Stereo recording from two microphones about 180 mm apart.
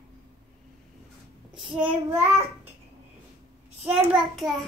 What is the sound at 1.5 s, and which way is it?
Child singing, 25° right (ahead or behind).